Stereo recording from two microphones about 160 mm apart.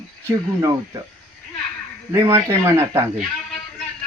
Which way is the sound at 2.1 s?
20° right (ahead or behind).